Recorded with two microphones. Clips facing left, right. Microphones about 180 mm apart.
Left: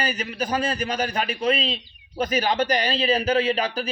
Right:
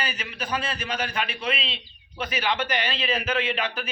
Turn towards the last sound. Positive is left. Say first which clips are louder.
# left 5 dB
turn(degrees=40)  # may be behind; listen again after turning